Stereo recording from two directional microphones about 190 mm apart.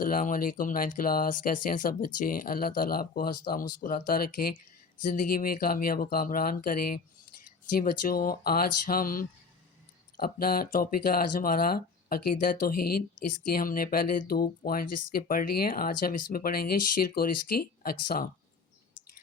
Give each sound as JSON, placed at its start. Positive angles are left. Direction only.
{"t": 0.0, "sound": "speech", "side_deg": 45}